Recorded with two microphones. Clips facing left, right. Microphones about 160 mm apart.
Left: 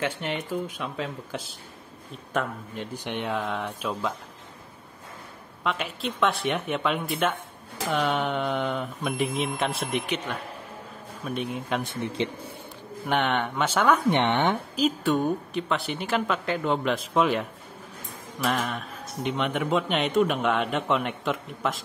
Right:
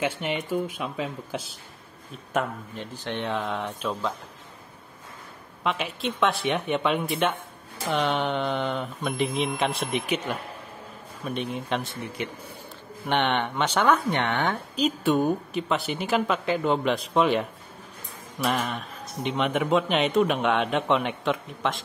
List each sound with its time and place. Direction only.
0.0 s speech: 5° right (ahead or behind)
2.8 s speech: 15° left (ahead or behind)
5.6 s speech: centre (ahead or behind)
11.8 s a man's voice: 20° left (ahead or behind)
13.1 s a man's voice: centre (ahead or behind); by 14.6 s 20° left (ahead or behind)
14.8 s speech: centre (ahead or behind)
18.5 s speech: centre (ahead or behind)